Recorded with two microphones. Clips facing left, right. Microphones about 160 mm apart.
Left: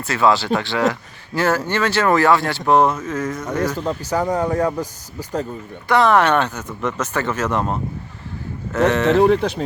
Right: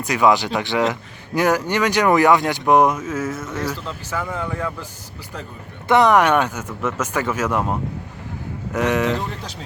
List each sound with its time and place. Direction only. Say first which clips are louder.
0.0 s speech: even; 15° right (ahead or behind)
3.8 s speech: left 7 dB; 45° left (ahead or behind)
5.9 s speech: even; 15° right (ahead or behind)
9.1 s speech: left 13 dB; 70° left (ahead or behind)